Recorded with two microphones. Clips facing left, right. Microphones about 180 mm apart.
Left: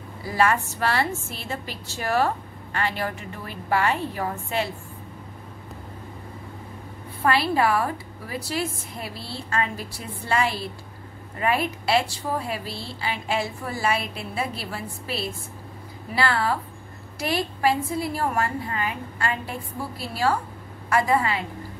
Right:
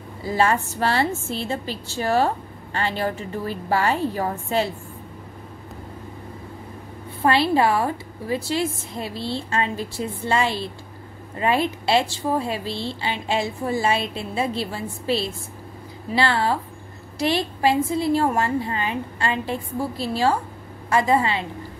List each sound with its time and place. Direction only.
0.2 s a woman's voice: 25° right (ahead or behind)
7.2 s a woman's voice: 25° right (ahead or behind)